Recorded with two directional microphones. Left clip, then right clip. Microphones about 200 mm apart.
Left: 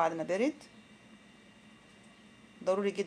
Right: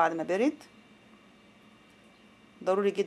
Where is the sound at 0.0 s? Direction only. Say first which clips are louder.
Right 4 dB; 15° right (ahead or behind).